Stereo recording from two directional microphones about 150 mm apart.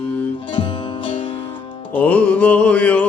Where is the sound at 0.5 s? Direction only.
35° left (ahead or behind).